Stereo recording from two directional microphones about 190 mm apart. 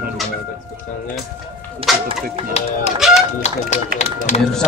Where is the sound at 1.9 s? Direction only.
Centre (ahead or behind).